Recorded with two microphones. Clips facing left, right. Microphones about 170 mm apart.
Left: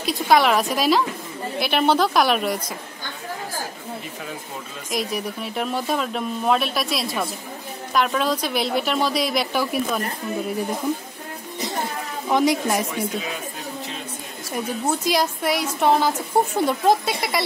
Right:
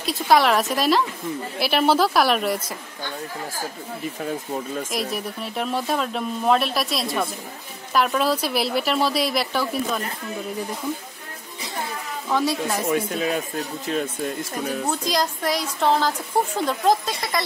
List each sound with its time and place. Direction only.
0.0 s speech: centre (ahead or behind)
4.9 s speech: centre (ahead or behind)
9.5 s a woman's voice: 10° left (ahead or behind)
12.3 s a woman's voice: 15° left (ahead or behind)
14.9 s a woman's voice: 10° left (ahead or behind)